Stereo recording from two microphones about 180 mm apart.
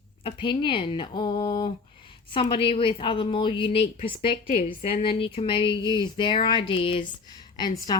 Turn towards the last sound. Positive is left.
turn(degrees=20)  # may be behind; listen again after turning